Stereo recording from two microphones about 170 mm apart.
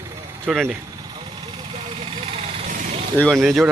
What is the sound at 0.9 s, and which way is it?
Vehicle, 25° right (ahead or behind).